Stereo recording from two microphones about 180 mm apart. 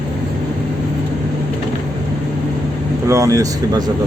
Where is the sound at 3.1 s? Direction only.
20° right (ahead or behind).